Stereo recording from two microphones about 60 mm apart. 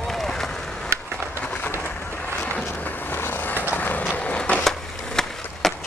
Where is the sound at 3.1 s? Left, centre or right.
Left.